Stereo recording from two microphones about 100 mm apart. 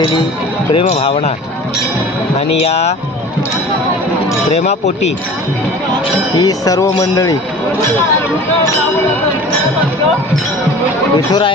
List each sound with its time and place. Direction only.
0.7 s speech: 65° left (ahead or behind)
4.5 s speech: 90° left
6.4 s speech: 35° left (ahead or behind)
11.3 s speech: 45° left (ahead or behind)